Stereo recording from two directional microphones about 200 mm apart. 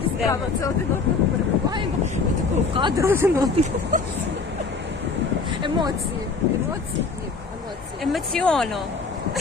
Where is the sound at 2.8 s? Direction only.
20° right (ahead or behind).